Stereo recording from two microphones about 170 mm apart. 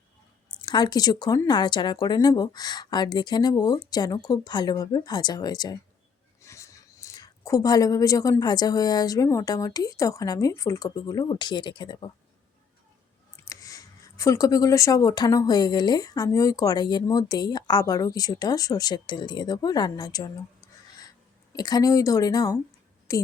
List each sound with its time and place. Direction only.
0.6 s speech: 25° left (ahead or behind)
13.3 s speech: 20° left (ahead or behind)
21.5 s a woman's voice: 25° left (ahead or behind)